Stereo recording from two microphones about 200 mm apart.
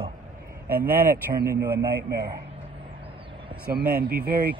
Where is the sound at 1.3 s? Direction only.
50° right (ahead or behind).